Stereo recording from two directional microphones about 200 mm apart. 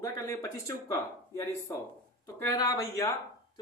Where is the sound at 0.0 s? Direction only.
15° left (ahead or behind).